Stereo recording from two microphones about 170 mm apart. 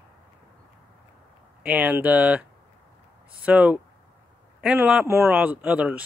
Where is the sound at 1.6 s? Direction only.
5° right (ahead or behind).